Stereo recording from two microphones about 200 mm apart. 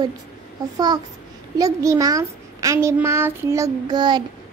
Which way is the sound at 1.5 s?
15° right (ahead or behind).